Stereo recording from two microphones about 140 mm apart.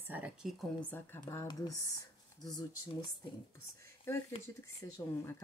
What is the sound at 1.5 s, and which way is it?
Speech, 30° left (ahead or behind).